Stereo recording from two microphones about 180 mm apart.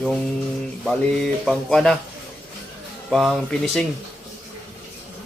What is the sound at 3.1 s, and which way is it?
Speech, centre (ahead or behind).